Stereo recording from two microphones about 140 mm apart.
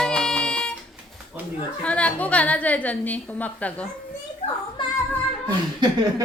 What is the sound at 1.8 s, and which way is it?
A woman's voice, 10° left (ahead or behind).